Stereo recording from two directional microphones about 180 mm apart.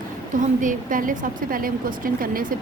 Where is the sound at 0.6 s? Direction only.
45° right (ahead or behind).